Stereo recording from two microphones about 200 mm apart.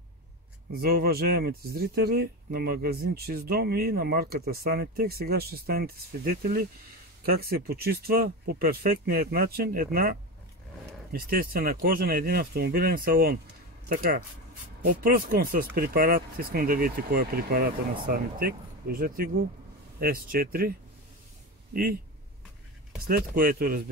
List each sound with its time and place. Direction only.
0.7 s speech: 50° right (ahead or behind)
23.0 s speech: 45° right (ahead or behind)